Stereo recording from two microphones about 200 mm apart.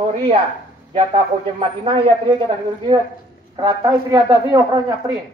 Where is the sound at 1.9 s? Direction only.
25° right (ahead or behind).